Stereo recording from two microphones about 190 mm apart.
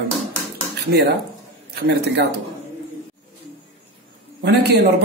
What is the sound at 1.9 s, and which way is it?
Speech, 60° right (ahead or behind).